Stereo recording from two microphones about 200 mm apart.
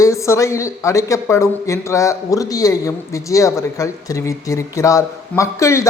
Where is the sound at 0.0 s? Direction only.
15° left (ahead or behind).